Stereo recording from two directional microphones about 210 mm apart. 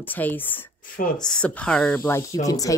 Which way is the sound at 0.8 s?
40° left (ahead or behind).